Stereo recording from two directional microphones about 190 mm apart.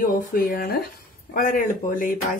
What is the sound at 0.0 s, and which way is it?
Speech, 50° left (ahead or behind).